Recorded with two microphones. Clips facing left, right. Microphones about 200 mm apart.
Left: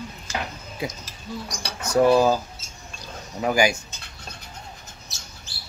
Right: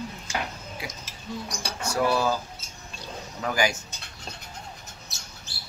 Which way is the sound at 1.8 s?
20° left (ahead or behind).